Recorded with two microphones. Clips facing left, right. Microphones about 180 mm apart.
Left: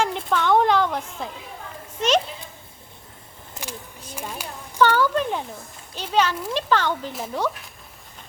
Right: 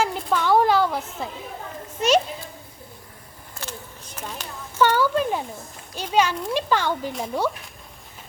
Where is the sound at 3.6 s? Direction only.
20° left (ahead or behind).